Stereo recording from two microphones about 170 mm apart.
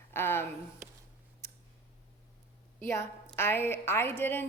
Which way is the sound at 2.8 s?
15° left (ahead or behind).